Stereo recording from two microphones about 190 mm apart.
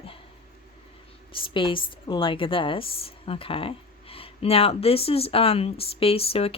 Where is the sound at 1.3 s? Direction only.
25° left (ahead or behind).